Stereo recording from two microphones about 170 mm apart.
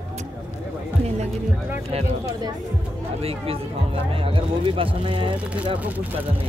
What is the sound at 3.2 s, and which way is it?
Speech, 35° right (ahead or behind).